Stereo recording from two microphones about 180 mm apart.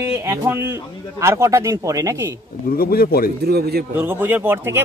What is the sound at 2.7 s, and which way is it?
Speech, 55° left (ahead or behind).